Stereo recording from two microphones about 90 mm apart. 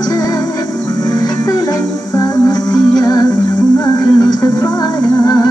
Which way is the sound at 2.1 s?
45° left (ahead or behind).